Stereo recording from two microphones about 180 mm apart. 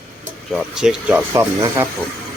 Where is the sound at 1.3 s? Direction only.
15° right (ahead or behind).